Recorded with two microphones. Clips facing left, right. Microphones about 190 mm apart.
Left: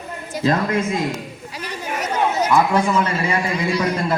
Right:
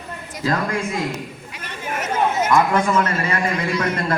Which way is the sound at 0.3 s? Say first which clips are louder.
Left 3 dB; 25° left (ahead or behind).